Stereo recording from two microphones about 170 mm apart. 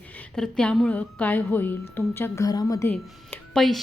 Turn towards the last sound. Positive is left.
turn(degrees=0)  # may be behind; listen again after turning